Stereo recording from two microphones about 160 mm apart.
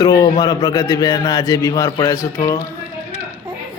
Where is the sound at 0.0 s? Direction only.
25° left (ahead or behind).